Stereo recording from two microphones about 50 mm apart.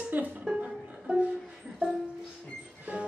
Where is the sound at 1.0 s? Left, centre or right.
Right.